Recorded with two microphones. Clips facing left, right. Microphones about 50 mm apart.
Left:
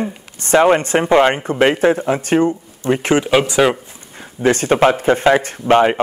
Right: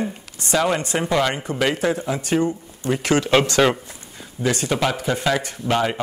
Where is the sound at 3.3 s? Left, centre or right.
Centre.